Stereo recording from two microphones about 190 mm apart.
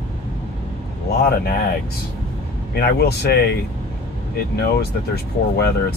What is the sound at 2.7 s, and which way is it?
Speech, 55° left (ahead or behind).